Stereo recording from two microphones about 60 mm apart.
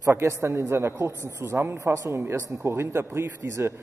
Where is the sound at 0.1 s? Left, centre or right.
Right.